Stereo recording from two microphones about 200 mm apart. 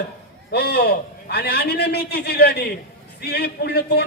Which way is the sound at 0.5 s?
55° left (ahead or behind).